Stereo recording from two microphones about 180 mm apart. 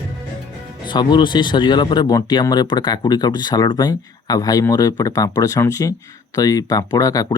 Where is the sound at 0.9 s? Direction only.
25° left (ahead or behind).